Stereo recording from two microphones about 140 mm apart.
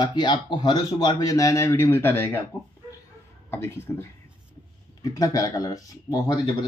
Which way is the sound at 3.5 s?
15° left (ahead or behind).